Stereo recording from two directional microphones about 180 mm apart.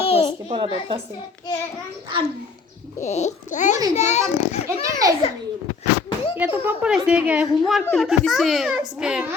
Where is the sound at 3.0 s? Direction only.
40° left (ahead or behind).